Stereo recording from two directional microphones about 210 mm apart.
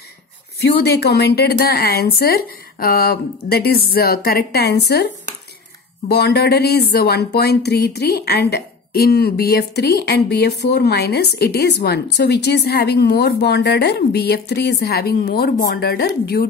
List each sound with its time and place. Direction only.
0.8 s speech: 50° left (ahead or behind)